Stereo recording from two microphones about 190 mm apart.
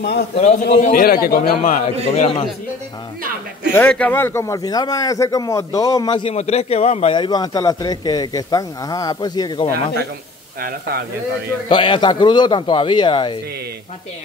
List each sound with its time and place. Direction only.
0.0 s a man's voice: 60° left (ahead or behind)
0.4 s a man's voice: 40° left (ahead or behind)
2.1 s a man's voice: 35° left (ahead or behind)
3.7 s speech: 10° left (ahead or behind)
6.3 s a man's voice: 35° left (ahead or behind)
10.6 s speech: 55° right (ahead or behind)
11.7 s a man's voice: 25° left (ahead or behind)